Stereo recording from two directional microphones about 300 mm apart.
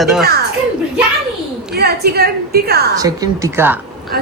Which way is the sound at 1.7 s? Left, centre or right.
Right.